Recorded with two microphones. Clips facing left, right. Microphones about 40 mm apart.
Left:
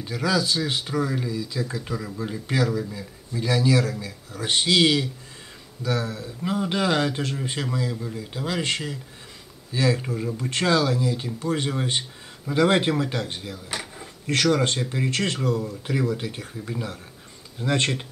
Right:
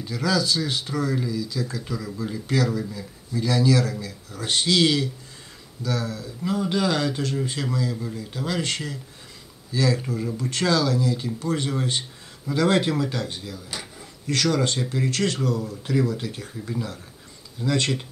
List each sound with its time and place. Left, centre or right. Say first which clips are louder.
0.0 s speech: even; left
13.9 s a sound: left 1 dB; left
14.9 s speech: right 1 dB; left
17.6 s speech: even; left